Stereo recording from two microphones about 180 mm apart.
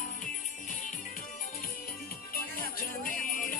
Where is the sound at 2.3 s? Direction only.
55° left (ahead or behind).